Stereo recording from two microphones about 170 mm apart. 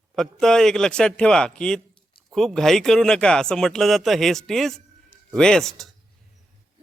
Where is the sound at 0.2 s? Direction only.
5° left (ahead or behind).